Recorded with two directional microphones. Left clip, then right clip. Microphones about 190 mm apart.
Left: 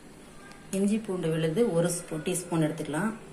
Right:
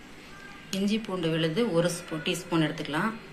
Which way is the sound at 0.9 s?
35° left (ahead or behind).